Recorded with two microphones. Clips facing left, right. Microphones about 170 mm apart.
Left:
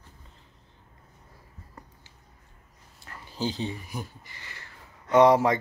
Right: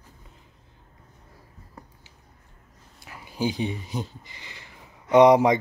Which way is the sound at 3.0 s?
10° right (ahead or behind).